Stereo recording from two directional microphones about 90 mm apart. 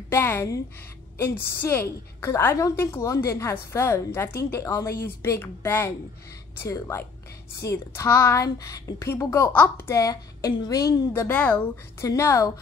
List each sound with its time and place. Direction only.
0.1 s a woman's voice: 25° left (ahead or behind); by 11.2 s 40° left (ahead or behind)
11.2 s speech: 15° left (ahead or behind)
12.0 s a woman's voice: 30° left (ahead or behind)